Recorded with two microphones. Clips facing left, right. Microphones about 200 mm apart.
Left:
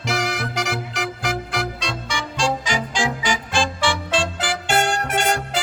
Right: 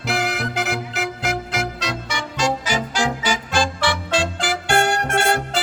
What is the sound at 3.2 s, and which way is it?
Music, 5° right (ahead or behind).